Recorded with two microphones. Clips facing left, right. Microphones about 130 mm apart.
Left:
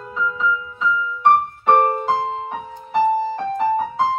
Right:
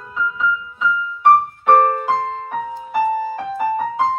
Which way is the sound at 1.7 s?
10° left (ahead or behind).